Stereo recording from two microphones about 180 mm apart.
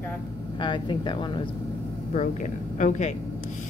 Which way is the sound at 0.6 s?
25° left (ahead or behind).